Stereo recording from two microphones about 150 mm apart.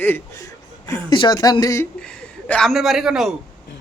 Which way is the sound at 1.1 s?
30° left (ahead or behind).